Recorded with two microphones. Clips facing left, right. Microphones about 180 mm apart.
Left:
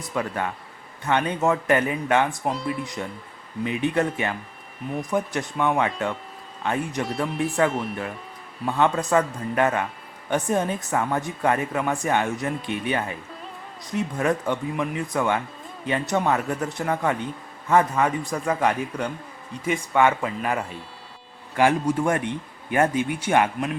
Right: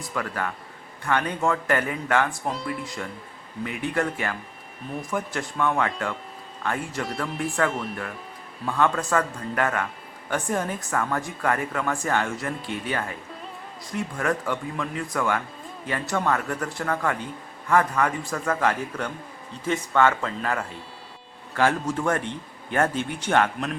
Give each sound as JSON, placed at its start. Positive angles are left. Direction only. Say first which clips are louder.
{"t": 0.1, "sound": "a man's voice", "louder": "left 3 dB", "side_deg": 20}
{"t": 7.7, "sound": "speech", "louder": "left 2 dB", "side_deg": 0}
{"t": 8.6, "sound": "speech", "louder": "left 2 dB", "side_deg": 20}